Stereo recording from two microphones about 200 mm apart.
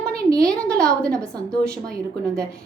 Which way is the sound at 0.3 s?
15° right (ahead or behind).